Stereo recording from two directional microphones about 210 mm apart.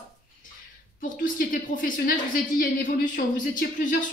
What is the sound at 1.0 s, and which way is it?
A woman's voice, 40° left (ahead or behind).